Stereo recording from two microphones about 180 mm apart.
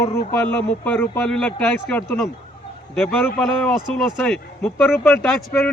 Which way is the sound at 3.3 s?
Centre (ahead or behind).